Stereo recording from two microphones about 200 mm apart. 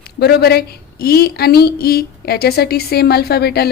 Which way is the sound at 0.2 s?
50° left (ahead or behind).